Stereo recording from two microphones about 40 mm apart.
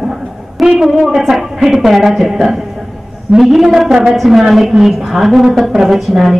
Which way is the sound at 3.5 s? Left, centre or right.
Centre.